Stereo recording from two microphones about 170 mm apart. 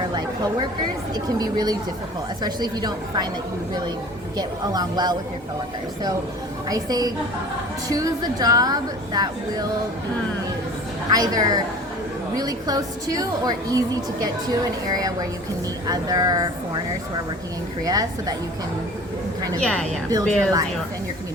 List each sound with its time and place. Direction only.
1.1 s a woman's voice: 25° right (ahead or behind)
4.4 s a woman's voice: 25° right (ahead or behind)
6.7 s a woman's voice: 20° right (ahead or behind)
11.1 s a woman's voice: 20° right (ahead or behind)
17.8 s a woman's voice: 20° right (ahead or behind)
19.6 s a woman's voice: 5° left (ahead or behind)
20.1 s a woman's voice: 20° right (ahead or behind)